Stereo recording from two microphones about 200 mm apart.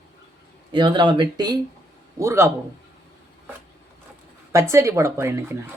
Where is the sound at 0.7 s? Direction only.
25° right (ahead or behind).